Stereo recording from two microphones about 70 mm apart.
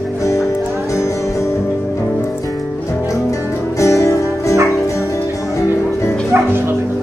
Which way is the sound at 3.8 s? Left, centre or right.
Left.